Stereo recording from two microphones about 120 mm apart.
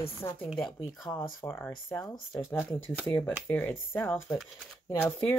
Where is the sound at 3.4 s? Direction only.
15° left (ahead or behind).